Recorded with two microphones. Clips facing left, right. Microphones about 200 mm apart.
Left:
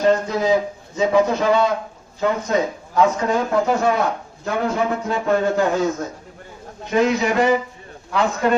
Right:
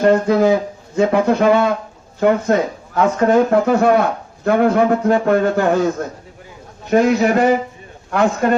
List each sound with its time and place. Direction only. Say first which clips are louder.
0.0 s speech: right 5 dB; 60° right (ahead or behind)
6.9 s a man's voice: right 4 dB; 50° right (ahead or behind)